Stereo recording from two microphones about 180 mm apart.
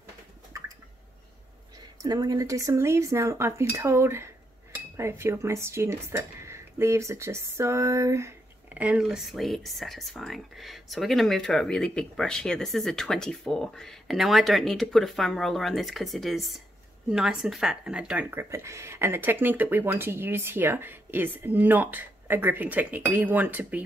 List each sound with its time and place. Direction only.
2.0 s speech: 20° right (ahead or behind)